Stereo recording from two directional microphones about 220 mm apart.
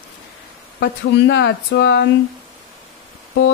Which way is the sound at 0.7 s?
55° left (ahead or behind).